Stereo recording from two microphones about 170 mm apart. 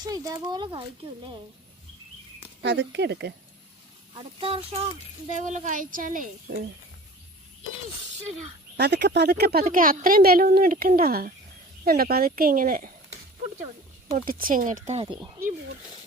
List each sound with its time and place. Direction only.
0.0 s speech: 20° right (ahead or behind)
2.6 s speech: 90° right
4.1 s speech: 30° right (ahead or behind)
5.4 s speech: 50° right (ahead or behind)
8.8 s a woman's voice: 90° right; by 12.9 s 55° right (ahead or behind)
14.1 s speech: 50° right (ahead or behind); by 15.2 s 35° right (ahead or behind)